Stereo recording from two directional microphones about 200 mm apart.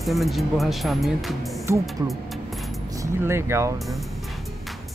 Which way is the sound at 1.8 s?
Centre (ahead or behind).